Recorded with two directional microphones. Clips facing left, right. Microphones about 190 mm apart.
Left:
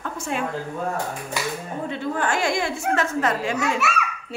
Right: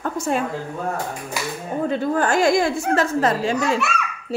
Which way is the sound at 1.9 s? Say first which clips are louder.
Right 5 dB; 40° right (ahead or behind).